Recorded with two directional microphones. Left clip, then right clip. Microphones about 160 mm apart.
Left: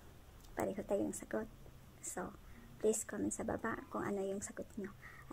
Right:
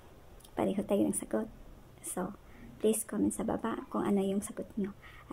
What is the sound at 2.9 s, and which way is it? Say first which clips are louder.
Speech: right 7 dB; 20° right (ahead or behind).